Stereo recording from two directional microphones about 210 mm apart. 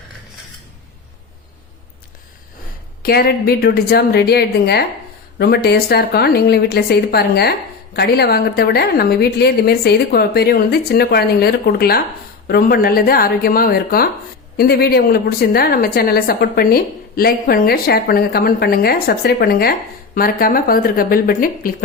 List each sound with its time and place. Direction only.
3.0 s a woman's voice: 45° left (ahead or behind)